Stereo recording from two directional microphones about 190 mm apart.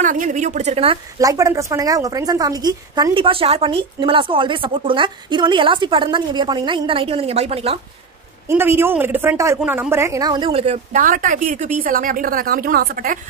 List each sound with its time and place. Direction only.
0.0 s speech: 45° right (ahead or behind)
1.2 s a woman's voice: 15° right (ahead or behind)
8.5 s a woman's voice: 10° right (ahead or behind); by 11.0 s 35° right (ahead or behind)
11.0 s a woman's voice: 45° right (ahead or behind)